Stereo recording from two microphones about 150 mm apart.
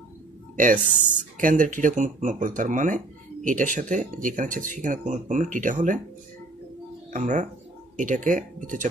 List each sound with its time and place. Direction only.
0.6 s speech: 60° right (ahead or behind)
7.1 s speech: 60° right (ahead or behind)